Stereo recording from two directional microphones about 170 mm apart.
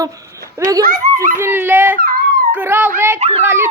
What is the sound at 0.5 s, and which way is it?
Speech, 20° right (ahead or behind).